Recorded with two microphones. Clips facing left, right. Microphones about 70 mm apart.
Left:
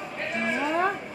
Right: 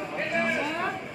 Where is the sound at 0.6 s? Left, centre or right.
Centre.